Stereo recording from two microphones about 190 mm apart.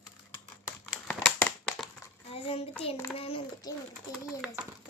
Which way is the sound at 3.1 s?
30° left (ahead or behind).